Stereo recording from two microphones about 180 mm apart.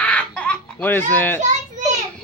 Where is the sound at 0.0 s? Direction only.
5° left (ahead or behind).